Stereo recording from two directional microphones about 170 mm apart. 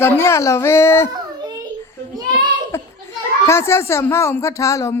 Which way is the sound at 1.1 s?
25° right (ahead or behind).